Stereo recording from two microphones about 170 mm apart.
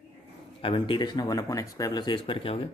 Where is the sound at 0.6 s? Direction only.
30° left (ahead or behind).